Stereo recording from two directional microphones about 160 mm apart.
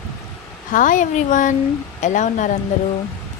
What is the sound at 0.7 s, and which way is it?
Speech, 55° left (ahead or behind).